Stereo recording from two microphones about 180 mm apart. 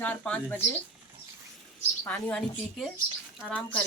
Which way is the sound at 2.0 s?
5° left (ahead or behind).